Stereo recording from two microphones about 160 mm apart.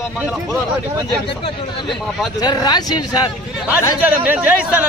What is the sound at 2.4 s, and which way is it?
Speech, 25° left (ahead or behind).